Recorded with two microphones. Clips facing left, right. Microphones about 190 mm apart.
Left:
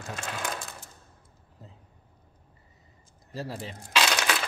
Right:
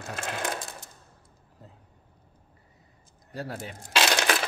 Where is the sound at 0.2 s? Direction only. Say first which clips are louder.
Right 4 dB; 45° right (ahead or behind).